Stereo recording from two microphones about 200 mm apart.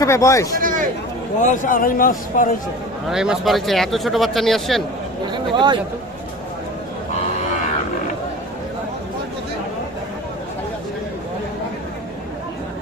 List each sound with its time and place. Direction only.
0.0 s speech: 15° left (ahead or behind)
0.6 s a sound: 40° right (ahead or behind)
1.4 s a man's voice: 40° left (ahead or behind)
3.1 s speech: centre (ahead or behind)
5.2 s speech: 20° right (ahead or behind)